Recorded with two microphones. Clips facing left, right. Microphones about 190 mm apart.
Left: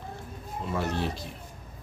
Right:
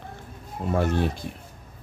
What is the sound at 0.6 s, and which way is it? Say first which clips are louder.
Speech: right 6 dB; 50° right (ahead or behind).